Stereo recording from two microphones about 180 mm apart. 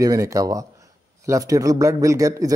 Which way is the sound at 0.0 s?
20° right (ahead or behind).